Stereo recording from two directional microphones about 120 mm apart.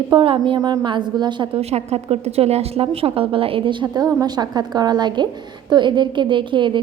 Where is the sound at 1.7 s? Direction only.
60° right (ahead or behind).